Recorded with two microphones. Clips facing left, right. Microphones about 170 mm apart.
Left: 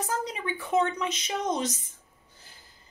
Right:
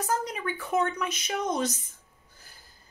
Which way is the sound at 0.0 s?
20° left (ahead or behind).